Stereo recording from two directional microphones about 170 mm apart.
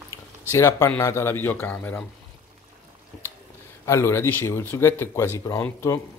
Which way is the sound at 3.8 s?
15° left (ahead or behind).